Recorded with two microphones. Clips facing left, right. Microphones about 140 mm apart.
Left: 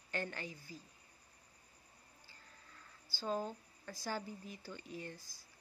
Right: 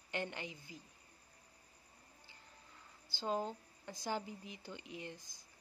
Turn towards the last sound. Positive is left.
turn(degrees=-20)  # may be behind; listen again after turning